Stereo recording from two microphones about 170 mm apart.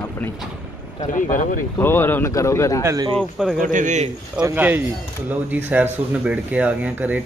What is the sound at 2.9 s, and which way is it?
Speech, 25° right (ahead or behind).